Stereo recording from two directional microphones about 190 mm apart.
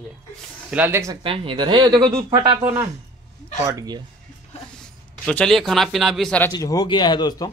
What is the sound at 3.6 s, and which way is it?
Speech, 15° right (ahead or behind).